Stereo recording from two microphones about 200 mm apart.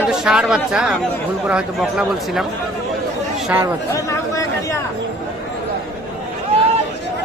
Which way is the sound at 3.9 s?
15° left (ahead or behind).